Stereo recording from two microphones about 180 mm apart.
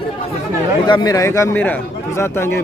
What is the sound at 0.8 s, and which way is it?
Speech, 25° left (ahead or behind).